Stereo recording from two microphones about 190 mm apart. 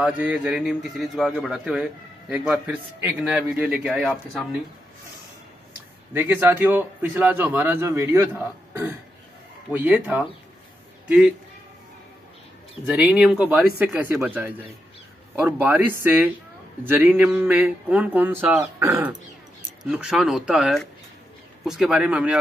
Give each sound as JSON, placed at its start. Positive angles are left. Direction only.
{"t": 0.0, "sound": "a man's voice", "side_deg": -5}
{"t": 6.1, "sound": "speech", "side_deg": -10}
{"t": 9.7, "sound": "a man's voice", "side_deg": -10}
{"t": 12.8, "sound": "a man's voice", "side_deg": -5}